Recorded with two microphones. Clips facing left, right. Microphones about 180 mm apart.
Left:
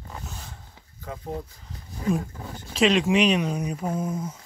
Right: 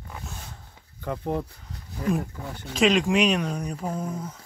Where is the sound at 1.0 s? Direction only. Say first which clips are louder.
Right 5 dB; 70° right (ahead or behind).